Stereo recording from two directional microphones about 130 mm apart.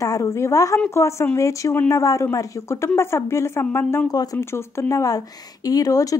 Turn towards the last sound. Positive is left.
turn(degrees=25)  # may be behind; listen again after turning